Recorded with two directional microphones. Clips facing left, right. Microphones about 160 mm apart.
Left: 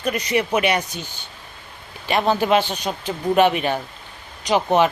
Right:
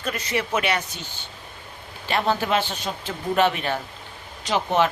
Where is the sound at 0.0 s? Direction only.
15° left (ahead or behind).